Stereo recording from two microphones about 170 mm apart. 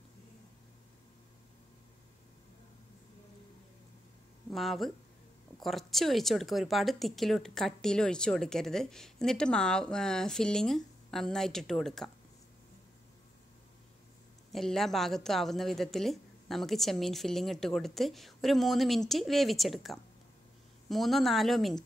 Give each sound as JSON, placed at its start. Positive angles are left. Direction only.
{"t": 4.5, "sound": "speech", "side_deg": 0}
{"t": 14.5, "sound": "speech", "side_deg": 0}